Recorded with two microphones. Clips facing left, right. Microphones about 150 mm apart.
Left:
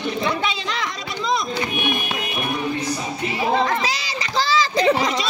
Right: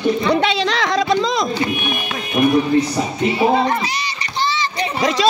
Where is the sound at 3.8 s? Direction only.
90° left.